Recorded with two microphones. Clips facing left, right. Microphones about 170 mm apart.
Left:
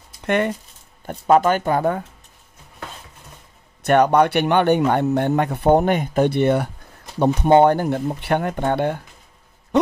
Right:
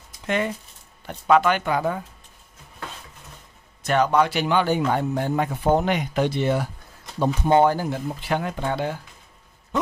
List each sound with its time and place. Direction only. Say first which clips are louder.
0.2 s speech: left 5 dB; 60° left (ahead or behind)
1.0 s speech: left 3 dB; 40° left (ahead or behind)
3.8 s speech: left 5 dB; 60° left (ahead or behind)